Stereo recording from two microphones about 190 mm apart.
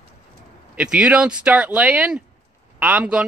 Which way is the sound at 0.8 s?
5° right (ahead or behind).